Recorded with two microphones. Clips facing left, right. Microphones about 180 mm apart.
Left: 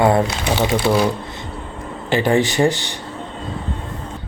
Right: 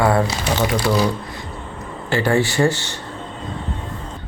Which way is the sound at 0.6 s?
25° left (ahead or behind).